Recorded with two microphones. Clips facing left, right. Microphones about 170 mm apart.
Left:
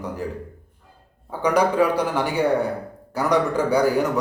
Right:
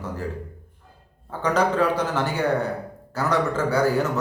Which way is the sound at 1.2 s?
10° left (ahead or behind).